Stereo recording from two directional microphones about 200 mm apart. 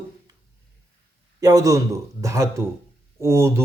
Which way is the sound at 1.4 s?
20° right (ahead or behind).